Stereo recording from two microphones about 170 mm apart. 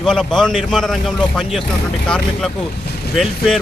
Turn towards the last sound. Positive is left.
turn(degrees=0)  # may be behind; listen again after turning